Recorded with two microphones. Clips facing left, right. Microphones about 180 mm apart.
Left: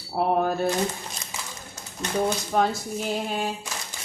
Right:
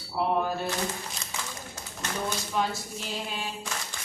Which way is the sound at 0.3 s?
50° left (ahead or behind).